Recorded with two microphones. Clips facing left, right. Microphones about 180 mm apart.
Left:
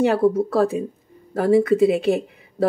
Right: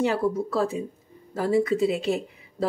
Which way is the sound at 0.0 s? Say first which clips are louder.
Left 6 dB; 60° left (ahead or behind).